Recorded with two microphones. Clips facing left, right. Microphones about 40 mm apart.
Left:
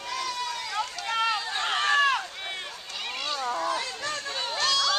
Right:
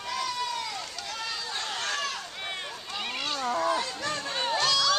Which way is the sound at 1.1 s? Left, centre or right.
Left.